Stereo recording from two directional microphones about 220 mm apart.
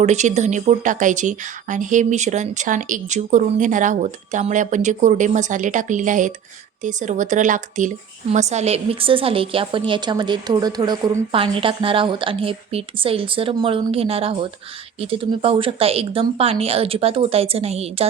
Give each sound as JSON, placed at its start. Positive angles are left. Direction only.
{"t": 0.0, "sound": "a woman's voice", "side_deg": -30}